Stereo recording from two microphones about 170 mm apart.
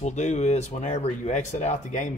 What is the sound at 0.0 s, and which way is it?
Speech, 40° left (ahead or behind).